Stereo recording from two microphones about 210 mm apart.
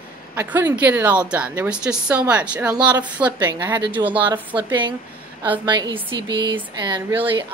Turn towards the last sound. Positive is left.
turn(degrees=-20)  # may be behind; listen again after turning